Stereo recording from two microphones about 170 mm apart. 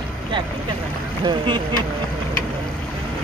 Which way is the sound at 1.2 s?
25° right (ahead or behind).